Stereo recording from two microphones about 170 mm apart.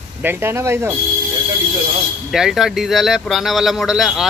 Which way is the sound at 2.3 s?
Centre (ahead or behind).